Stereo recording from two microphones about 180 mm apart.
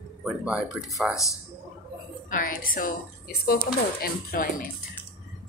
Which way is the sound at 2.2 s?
50° left (ahead or behind).